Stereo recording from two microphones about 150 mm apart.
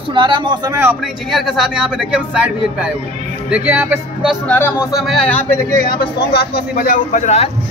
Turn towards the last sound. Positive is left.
turn(degrees=50)  # may be behind; listen again after turning